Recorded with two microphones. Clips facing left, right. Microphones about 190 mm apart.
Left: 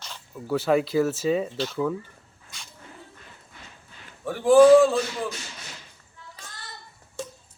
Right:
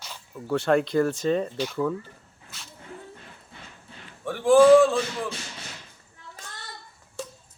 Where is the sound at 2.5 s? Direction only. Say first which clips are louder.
Even; 5° right (ahead or behind).